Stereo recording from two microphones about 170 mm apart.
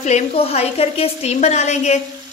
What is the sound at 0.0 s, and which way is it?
A woman's voice, 40° left (ahead or behind).